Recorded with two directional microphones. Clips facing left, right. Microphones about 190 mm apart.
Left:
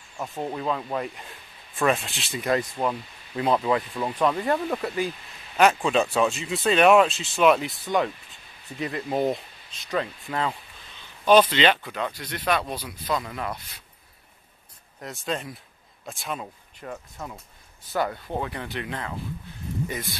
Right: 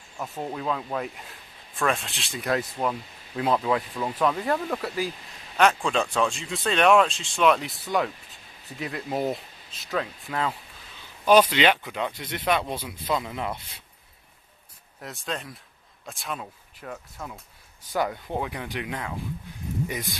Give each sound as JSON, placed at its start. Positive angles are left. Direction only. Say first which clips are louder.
{"t": 0.2, "sound": "speech", "louder": "left 2 dB", "side_deg": 5}
{"t": 15.0, "sound": "speech", "louder": "left 3 dB", "side_deg": 0}
{"t": 17.9, "sound": "speech", "louder": "even", "side_deg": -15}